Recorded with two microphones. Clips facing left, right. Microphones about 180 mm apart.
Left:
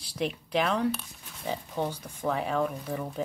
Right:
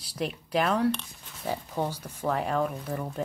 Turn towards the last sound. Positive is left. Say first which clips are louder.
# even
turn(degrees=0)  # may be behind; listen again after turning